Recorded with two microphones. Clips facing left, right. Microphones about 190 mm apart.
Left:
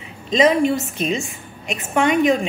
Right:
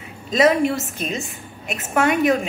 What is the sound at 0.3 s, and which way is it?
A woman's voice, 5° right (ahead or behind).